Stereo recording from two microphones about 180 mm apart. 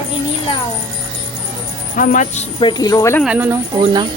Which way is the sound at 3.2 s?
10° right (ahead or behind).